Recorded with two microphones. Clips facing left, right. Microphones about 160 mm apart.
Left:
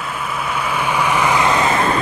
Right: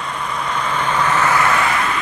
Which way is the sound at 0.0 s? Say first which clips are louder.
Even; 5° left (ahead or behind).